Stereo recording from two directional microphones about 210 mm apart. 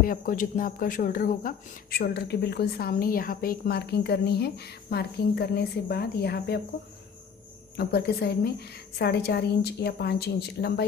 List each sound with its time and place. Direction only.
0.0 s speech: 40° left (ahead or behind)
7.7 s speech: 50° left (ahead or behind)